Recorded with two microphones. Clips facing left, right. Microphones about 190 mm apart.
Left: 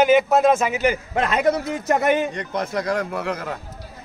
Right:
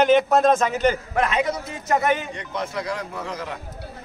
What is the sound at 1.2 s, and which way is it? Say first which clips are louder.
Speech: left 1 dB; 40° left (ahead or behind).